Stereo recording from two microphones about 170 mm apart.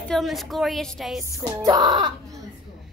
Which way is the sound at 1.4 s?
25° right (ahead or behind).